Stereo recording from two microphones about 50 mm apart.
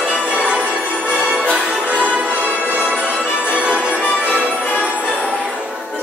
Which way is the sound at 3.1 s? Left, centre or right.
Centre.